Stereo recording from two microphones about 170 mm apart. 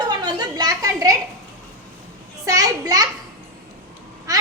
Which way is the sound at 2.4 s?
20° right (ahead or behind).